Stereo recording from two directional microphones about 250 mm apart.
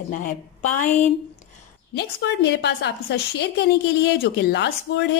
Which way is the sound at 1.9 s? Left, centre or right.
Left.